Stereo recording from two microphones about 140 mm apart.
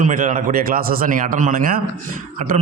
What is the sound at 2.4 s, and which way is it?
Speech, 55° right (ahead or behind).